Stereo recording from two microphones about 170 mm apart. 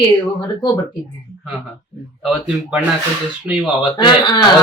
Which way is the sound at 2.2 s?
5° right (ahead or behind).